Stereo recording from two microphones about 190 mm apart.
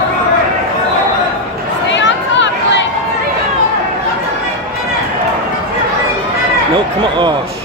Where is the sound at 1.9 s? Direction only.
70° left (ahead or behind).